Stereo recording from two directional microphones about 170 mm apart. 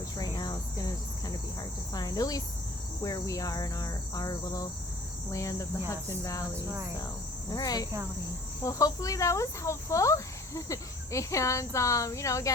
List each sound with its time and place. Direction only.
0.2 s cricket: 25° left (ahead or behind)
1.9 s speech: 20° left (ahead or behind)
7.5 s speech: 20° left (ahead or behind)